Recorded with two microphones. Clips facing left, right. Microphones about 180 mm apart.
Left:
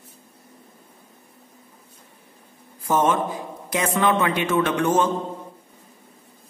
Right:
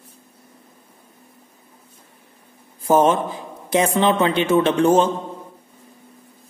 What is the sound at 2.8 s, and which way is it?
A man's voice, 30° right (ahead or behind).